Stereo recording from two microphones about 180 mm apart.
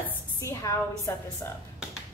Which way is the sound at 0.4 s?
15° left (ahead or behind).